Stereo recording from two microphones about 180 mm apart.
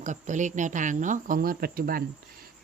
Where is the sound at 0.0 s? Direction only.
45° right (ahead or behind).